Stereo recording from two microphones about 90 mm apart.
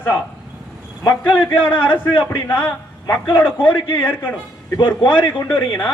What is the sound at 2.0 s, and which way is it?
A man's voice, 20° left (ahead or behind).